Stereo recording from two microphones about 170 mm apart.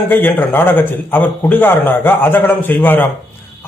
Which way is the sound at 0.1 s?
10° left (ahead or behind).